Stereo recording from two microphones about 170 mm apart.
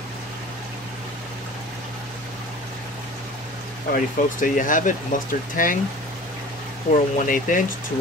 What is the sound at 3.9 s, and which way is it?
Speech, 50° left (ahead or behind).